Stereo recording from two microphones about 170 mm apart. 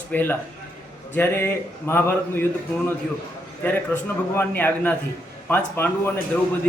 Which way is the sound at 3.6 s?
10° left (ahead or behind).